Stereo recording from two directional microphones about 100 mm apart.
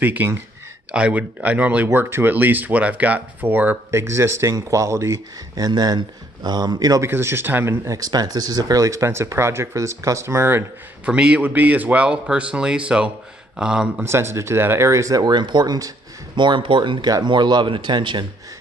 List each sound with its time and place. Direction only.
0.0 s a man's voice: 20° right (ahead or behind)
5.7 s a man's voice: 45° right (ahead or behind)
7.0 s speech: 25° right (ahead or behind)
11.1 s a man's voice: 10° right (ahead or behind)
14.0 s speech: 25° right (ahead or behind)
16.3 s a man's voice: 55° right (ahead or behind)